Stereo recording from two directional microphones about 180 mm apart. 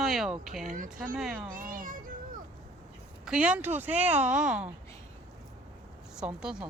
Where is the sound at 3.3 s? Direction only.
5° right (ahead or behind).